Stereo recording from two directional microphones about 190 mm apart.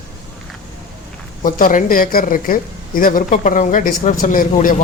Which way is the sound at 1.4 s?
45° left (ahead or behind).